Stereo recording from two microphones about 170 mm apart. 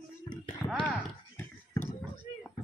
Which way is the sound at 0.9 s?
10° left (ahead or behind).